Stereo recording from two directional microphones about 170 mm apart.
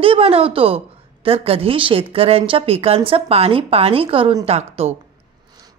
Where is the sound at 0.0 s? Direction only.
35° right (ahead or behind).